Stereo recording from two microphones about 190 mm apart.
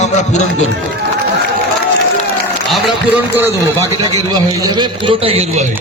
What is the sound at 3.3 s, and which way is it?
Speech, 15° right (ahead or behind).